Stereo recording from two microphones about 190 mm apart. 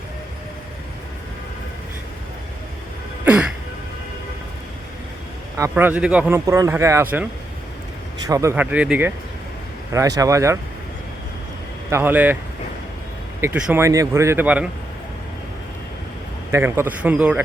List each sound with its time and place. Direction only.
5.5 s speech: 15° right (ahead or behind)
8.3 s speech: 15° right (ahead or behind)
11.9 s speech: 10° right (ahead or behind)
13.4 s speech: 5° right (ahead or behind)
16.5 s speech: 10° right (ahead or behind)